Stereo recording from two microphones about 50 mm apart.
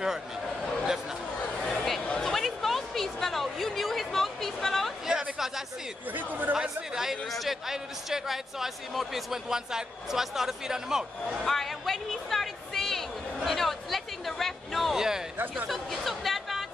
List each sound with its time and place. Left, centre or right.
1.6 s a sound: centre
6.1 s chatter: right
6.5 s speech: centre
11.4 s a woman's voice: centre
15.0 s speech: centre
15.7 s speech: centre